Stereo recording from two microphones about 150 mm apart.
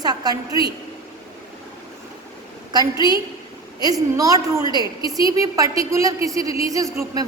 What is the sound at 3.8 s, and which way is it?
A woman's voice, 25° right (ahead or behind).